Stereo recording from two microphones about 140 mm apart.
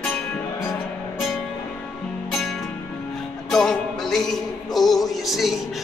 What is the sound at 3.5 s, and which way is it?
Music, 5° left (ahead or behind).